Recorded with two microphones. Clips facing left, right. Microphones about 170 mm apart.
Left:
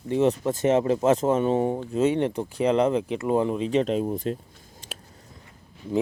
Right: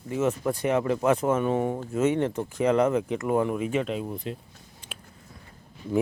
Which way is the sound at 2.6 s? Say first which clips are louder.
Left 1 dB; 30° left (ahead or behind).